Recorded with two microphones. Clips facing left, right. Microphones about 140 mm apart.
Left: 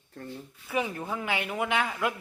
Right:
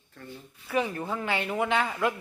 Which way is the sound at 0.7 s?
10° left (ahead or behind).